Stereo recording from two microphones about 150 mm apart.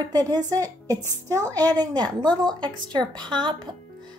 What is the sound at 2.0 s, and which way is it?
Speech, 5° left (ahead or behind).